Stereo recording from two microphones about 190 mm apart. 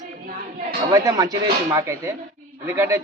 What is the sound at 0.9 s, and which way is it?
A man's voice, 20° right (ahead or behind).